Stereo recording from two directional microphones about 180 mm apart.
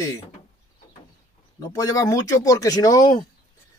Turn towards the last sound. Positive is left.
turn(degrees=20)  # may be behind; listen again after turning